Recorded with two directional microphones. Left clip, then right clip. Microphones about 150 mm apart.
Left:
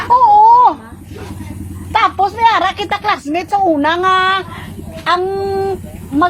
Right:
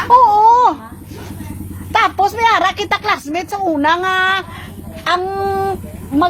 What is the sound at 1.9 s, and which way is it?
A woman's voice, 40° right (ahead or behind).